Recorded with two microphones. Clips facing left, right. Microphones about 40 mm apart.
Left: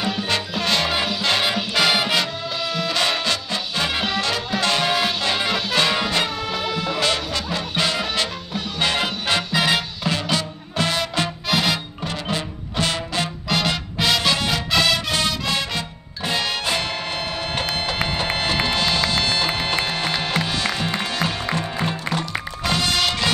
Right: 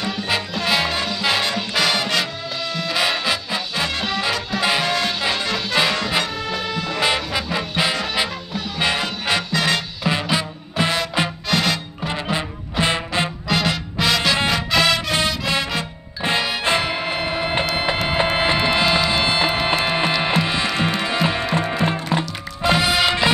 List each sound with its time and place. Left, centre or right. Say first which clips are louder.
0.0 s music: left 1 dB; centre
0.3 s music: right 3 dB; centre
2.7 s music: right 1 dB; centre
4.6 s music: right 1 dB; centre
4.8 s music: even; centre
7.0 s music: right 5 dB; centre
9.5 s music: left 1 dB; centre
10.3 s music: right 2 dB; centre
11.5 s music: even; centre
12.1 s music: right 3 dB; centre
13.5 s music: right 1 dB; centre